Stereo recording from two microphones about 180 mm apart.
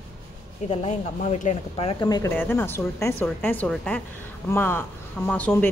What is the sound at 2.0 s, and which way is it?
Speech, 15° left (ahead or behind).